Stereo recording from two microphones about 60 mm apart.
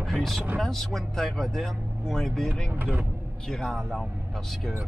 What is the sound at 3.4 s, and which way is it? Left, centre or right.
Speech, centre.